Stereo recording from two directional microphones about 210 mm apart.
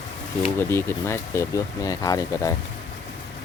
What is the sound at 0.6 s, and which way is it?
Speech, 10° left (ahead or behind).